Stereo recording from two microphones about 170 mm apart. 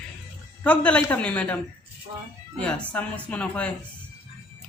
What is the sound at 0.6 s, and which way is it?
A woman's voice, 10° left (ahead or behind).